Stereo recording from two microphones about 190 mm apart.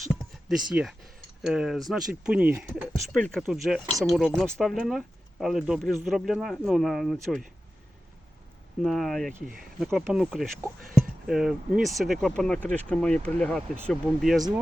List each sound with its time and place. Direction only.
0.0 s speech: centre (ahead or behind)
8.8 s speech: centre (ahead or behind)